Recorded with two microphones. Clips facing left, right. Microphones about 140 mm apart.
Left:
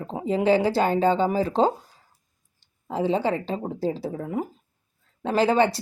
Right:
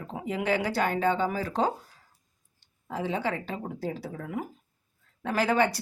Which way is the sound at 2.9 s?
30° left (ahead or behind).